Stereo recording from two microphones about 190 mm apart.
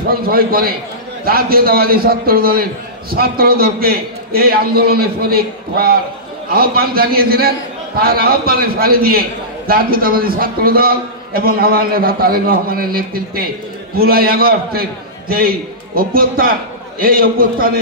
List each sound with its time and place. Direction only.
0.1 s a man's voice: 50° right (ahead or behind)